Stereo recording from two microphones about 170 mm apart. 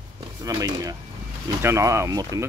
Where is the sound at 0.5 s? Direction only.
20° right (ahead or behind).